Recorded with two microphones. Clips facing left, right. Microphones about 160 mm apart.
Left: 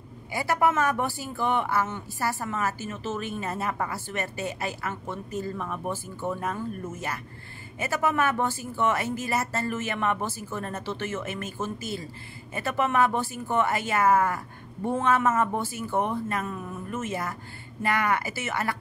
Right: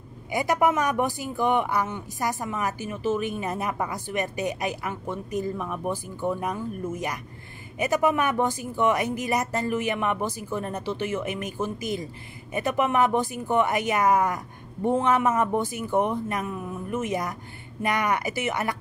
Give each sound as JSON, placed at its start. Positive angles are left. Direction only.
{"t": 0.3, "sound": "speech", "side_deg": -15}